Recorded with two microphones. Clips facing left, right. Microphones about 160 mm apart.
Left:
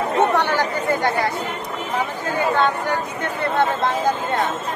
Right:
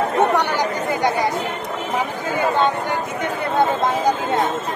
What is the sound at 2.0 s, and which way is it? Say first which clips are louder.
Speech: even; 15° right (ahead or behind).